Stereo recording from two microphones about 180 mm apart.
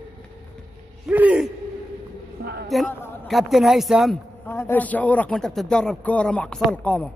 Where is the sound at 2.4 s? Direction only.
55° right (ahead or behind).